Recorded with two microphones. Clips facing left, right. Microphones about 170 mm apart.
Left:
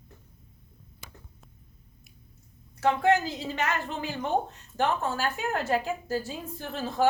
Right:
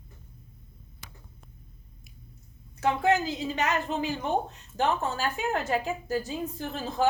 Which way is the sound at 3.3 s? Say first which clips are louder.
Right 2 dB; 20° right (ahead or behind).